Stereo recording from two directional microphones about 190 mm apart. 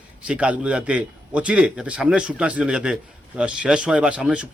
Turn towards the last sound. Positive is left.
turn(degrees=-5)  # may be behind; listen again after turning